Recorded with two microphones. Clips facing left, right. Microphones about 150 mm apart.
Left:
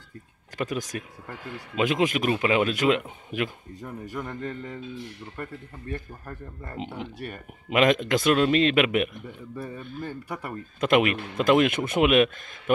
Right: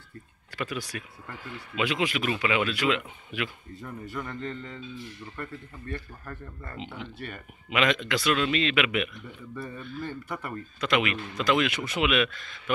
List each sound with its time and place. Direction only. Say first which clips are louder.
0.6 s speech: left 4 dB; 40° left (ahead or behind)
4.2 s a man's voice: left 2 dB; 10° left (ahead or behind)
5.4 s speech: left 2 dB; 45° left (ahead or behind)
6.2 s speech: left 2 dB; 25° left (ahead or behind)
7.0 s speech: left 3 dB; 45° left (ahead or behind)
10.0 s a man's voice: left 1 dB; 10° left (ahead or behind)
10.8 s speech: left 5 dB; 50° left (ahead or behind)